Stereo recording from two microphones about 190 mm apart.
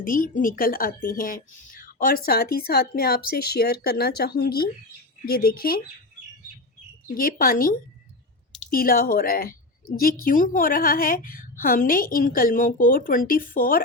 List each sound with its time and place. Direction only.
0.0 s a woman's voice: 45° left (ahead or behind)
7.1 s a woman's voice: 50° left (ahead or behind)